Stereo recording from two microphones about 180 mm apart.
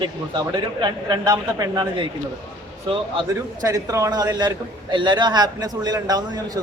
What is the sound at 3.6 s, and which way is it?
A man's voice, 20° right (ahead or behind).